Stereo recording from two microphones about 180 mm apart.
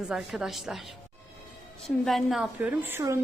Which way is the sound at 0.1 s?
5° right (ahead or behind).